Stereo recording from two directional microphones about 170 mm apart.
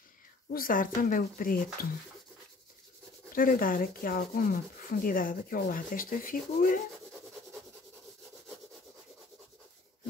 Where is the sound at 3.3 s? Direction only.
55° left (ahead or behind).